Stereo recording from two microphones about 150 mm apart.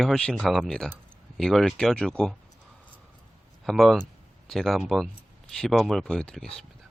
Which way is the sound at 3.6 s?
Centre (ahead or behind).